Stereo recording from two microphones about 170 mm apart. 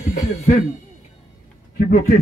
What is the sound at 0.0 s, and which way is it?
Music, 45° left (ahead or behind).